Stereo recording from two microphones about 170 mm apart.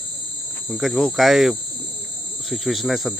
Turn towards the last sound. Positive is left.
turn(degrees=0)  # may be behind; listen again after turning